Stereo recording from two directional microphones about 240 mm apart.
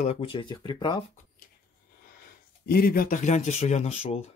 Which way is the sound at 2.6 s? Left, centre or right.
Left.